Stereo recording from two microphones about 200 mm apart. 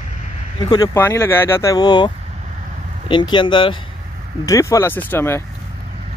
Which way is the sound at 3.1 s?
25° left (ahead or behind).